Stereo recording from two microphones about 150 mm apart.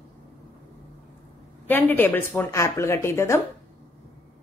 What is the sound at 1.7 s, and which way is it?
Speech, 10° left (ahead or behind).